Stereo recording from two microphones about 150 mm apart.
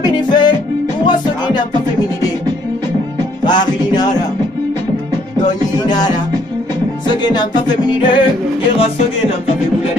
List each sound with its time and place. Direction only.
0.0 s music: 30° left (ahead or behind)
3.4 s music: 30° left (ahead or behind)
5.4 s music: 25° left (ahead or behind)